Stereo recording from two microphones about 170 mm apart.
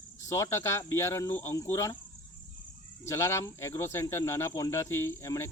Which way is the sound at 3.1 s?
15° left (ahead or behind).